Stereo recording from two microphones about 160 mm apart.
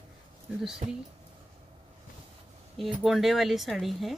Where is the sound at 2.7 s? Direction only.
Centre (ahead or behind).